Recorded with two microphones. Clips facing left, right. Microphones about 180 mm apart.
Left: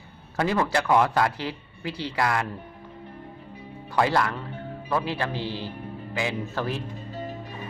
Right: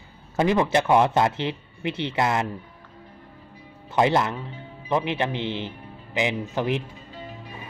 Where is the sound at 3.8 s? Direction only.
20° right (ahead or behind).